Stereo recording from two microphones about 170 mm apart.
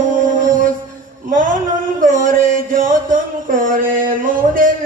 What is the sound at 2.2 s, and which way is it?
Music, 55° right (ahead or behind).